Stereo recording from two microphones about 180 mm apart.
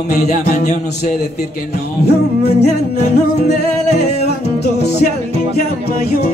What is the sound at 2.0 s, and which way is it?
Music, 65° left (ahead or behind).